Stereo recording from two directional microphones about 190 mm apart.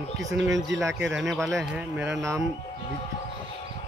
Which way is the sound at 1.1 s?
Centre (ahead or behind).